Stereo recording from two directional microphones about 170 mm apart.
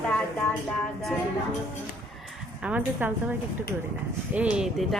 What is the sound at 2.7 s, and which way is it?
A woman's voice, 10° right (ahead or behind).